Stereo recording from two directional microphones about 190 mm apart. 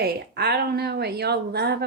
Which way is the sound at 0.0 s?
55° right (ahead or behind).